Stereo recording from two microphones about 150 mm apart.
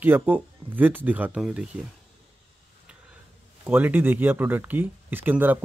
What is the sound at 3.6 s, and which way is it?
Speech, 15° right (ahead or behind).